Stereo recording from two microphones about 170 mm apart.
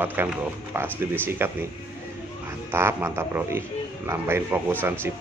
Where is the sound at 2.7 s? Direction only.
15° right (ahead or behind).